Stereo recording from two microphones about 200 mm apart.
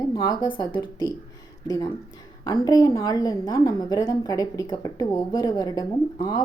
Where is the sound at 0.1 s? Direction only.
20° left (ahead or behind).